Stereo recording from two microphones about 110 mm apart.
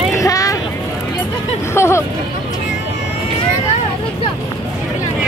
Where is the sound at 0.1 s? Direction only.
30° left (ahead or behind).